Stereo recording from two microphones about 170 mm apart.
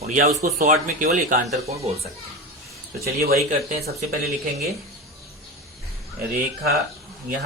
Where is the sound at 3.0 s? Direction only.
65° right (ahead or behind).